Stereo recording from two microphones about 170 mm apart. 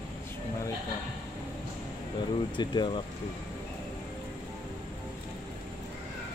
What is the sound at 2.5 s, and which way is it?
Speech, 25° left (ahead or behind).